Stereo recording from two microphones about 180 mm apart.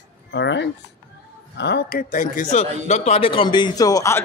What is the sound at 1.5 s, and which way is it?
Speech, 70° left (ahead or behind).